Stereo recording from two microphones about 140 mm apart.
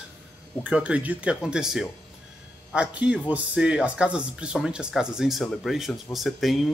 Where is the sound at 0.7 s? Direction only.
10° right (ahead or behind).